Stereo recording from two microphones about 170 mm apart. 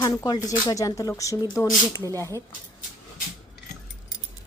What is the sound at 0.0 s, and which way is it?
Speech, 20° left (ahead or behind).